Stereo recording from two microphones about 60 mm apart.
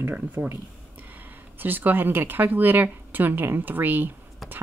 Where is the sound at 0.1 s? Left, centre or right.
Right.